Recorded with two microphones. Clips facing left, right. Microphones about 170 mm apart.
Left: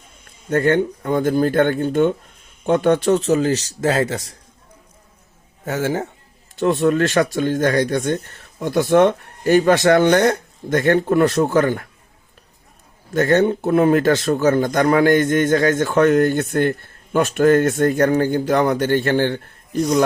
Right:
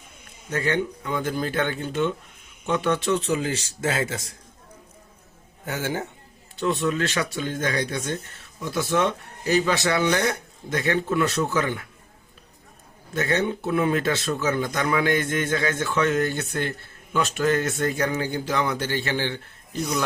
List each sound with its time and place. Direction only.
0.5 s speech: 50° left (ahead or behind); by 4.4 s 35° left (ahead or behind)
5.6 s speech: 40° left (ahead or behind)
13.1 s speech: 45° left (ahead or behind)